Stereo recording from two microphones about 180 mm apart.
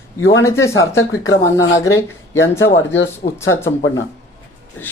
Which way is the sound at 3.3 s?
15° left (ahead or behind).